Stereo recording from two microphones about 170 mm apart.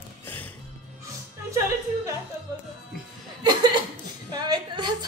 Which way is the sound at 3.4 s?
25° right (ahead or behind).